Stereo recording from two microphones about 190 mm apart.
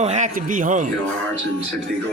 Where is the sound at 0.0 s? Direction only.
40° right (ahead or behind).